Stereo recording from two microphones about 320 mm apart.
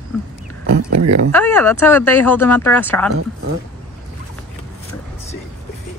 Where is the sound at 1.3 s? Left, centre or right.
Centre.